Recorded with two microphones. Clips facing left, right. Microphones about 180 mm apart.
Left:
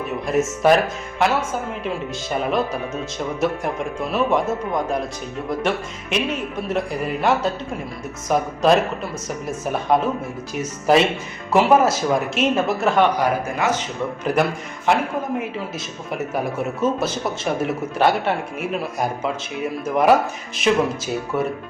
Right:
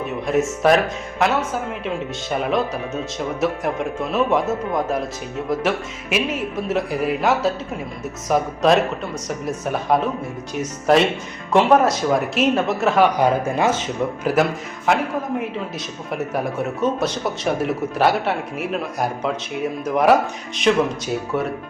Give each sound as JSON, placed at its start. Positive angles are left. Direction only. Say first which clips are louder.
{"t": 0.3, "sound": "a man's voice", "louder": "even", "side_deg": 0}
{"t": 13.1, "sound": "speech", "louder": "right 3 dB", "side_deg": -25}
{"t": 14.3, "sound": "a man's voice", "louder": "right 1 dB", "side_deg": -5}
{"t": 16.1, "sound": "a man's voice", "louder": "right 1 dB", "side_deg": 0}